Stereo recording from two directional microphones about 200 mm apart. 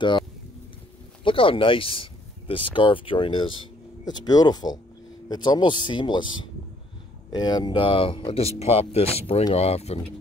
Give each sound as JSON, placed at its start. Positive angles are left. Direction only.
{"t": 1.2, "sound": "speech", "side_deg": 25}